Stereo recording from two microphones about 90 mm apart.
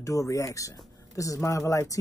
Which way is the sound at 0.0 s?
40° left (ahead or behind).